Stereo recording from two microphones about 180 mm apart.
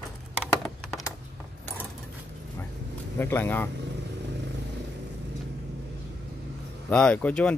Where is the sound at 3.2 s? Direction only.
10° left (ahead or behind).